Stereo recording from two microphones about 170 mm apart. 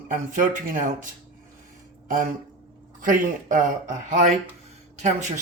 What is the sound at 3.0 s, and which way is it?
Speech, 50° right (ahead or behind).